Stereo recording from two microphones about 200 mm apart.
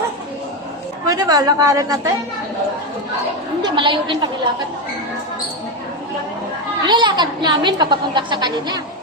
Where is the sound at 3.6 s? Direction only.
25° right (ahead or behind).